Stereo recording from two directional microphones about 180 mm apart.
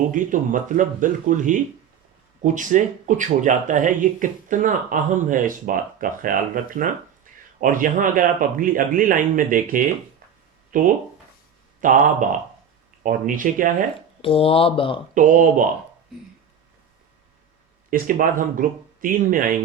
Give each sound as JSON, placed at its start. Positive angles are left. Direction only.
{"t": 0.1, "sound": "speech", "side_deg": -45}
{"t": 14.2, "sound": "speech", "side_deg": 30}
{"t": 15.1, "sound": "speech", "side_deg": -45}
{"t": 17.9, "sound": "speech", "side_deg": -50}